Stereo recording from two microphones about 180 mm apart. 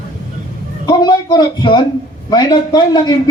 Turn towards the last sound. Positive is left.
turn(degrees=20)  # may be behind; listen again after turning